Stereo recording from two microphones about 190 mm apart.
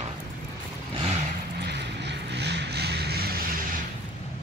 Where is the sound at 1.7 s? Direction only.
65° right (ahead or behind).